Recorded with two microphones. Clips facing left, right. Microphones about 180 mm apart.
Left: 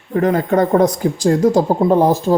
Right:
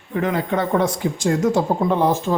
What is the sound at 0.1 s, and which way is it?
Speech, 40° left (ahead or behind).